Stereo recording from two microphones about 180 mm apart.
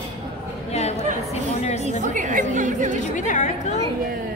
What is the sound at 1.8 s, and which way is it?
A woman's voice, 45° right (ahead or behind).